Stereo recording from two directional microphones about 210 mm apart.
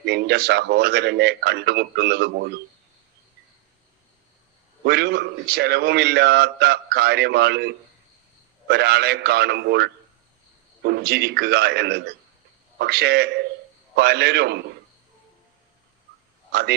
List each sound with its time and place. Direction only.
0.0 s a man's voice: 50° right (ahead or behind)
4.8 s a man's voice: 50° right (ahead or behind)
16.5 s a man's voice: 50° right (ahead or behind)